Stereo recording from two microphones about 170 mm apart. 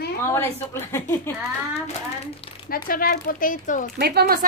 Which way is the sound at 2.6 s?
55° left (ahead or behind).